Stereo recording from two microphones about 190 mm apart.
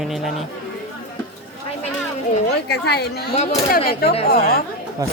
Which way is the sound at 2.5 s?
60° left (ahead or behind).